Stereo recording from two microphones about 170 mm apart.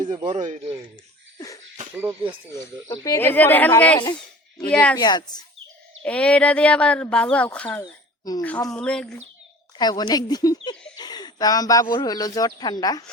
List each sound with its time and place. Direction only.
0.0 s speech: 25° right (ahead or behind)
0.3 s speech: 45° right (ahead or behind)
2.5 s speech: 20° left (ahead or behind)
4.9 s a woman's voice: 25° left (ahead or behind)
6.0 s speech: 5° left (ahead or behind)
8.2 s speech: 20° left (ahead or behind)
8.7 s speech: 5° left (ahead or behind)
9.7 s a woman's voice: 25° left (ahead or behind)